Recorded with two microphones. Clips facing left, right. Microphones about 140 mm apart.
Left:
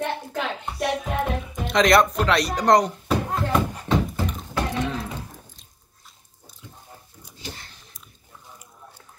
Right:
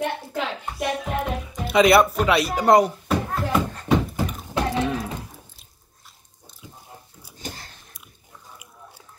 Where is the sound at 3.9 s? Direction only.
10° right (ahead or behind).